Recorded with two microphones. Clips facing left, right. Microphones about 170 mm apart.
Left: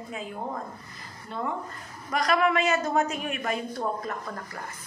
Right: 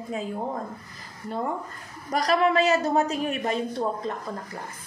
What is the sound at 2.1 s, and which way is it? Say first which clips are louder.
A woman's voice: right 2 dB; 30° right (ahead or behind).